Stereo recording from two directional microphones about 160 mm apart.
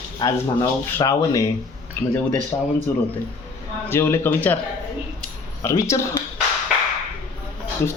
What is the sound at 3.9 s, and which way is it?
Speech, 15° left (ahead or behind).